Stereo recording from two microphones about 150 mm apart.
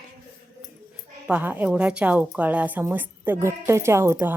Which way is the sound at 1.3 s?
10° right (ahead or behind).